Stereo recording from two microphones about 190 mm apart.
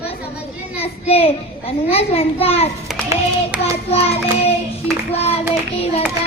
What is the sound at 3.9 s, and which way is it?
A child's voice, 30° left (ahead or behind).